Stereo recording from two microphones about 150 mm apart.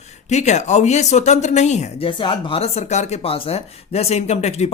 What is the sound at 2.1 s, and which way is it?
Speech, 35° left (ahead or behind).